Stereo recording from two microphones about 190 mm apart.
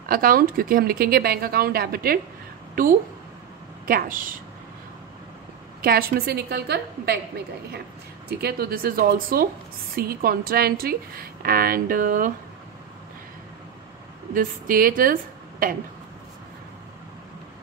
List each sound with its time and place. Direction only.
0.1 s a woman's voice: 50° right (ahead or behind)
5.8 s a woman's voice: 50° right (ahead or behind)
8.3 s a woman's voice: 55° right (ahead or behind)
14.3 s a woman's voice: 50° right (ahead or behind)